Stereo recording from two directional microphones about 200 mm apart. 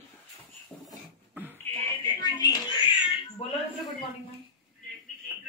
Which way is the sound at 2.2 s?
20° left (ahead or behind).